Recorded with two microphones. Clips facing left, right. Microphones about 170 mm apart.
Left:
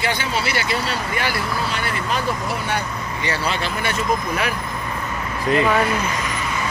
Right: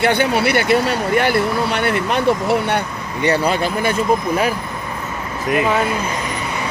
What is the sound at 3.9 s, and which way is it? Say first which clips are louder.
Speech: right 4 dB; 35° right (ahead or behind).